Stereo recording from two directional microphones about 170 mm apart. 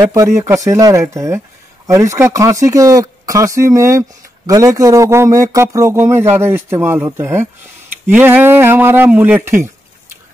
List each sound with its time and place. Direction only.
0.1 s a man's voice: 20° right (ahead or behind)